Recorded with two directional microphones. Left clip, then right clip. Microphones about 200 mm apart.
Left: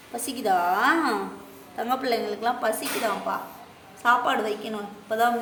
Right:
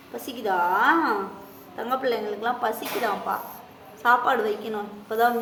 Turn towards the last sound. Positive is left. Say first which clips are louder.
# right 1 dB
turn(degrees=5)  # may be behind; listen again after turning